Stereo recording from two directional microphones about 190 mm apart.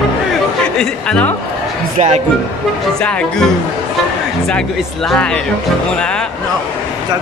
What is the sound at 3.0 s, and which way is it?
Speech, 5° left (ahead or behind).